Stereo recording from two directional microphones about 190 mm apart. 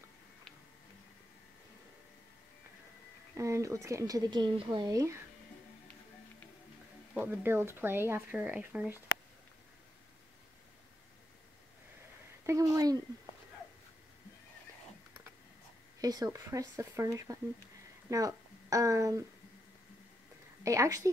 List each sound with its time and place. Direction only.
3.3 s speech: 15° right (ahead or behind)
7.2 s speech: 10° right (ahead or behind)
12.4 s speech: 15° right (ahead or behind)
16.0 s speech: 20° right (ahead or behind)
20.6 s speech: 15° right (ahead or behind)